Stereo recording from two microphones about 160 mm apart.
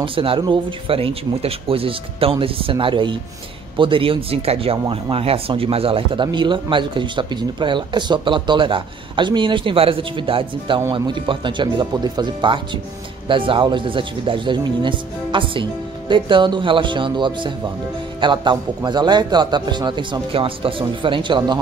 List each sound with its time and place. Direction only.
0.0 s speech: 35° right (ahead or behind)